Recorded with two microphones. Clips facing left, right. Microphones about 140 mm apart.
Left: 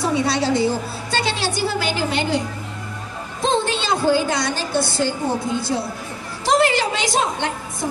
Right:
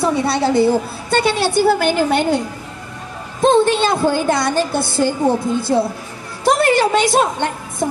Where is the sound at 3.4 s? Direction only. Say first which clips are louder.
Right 8 dB; 55° right (ahead or behind).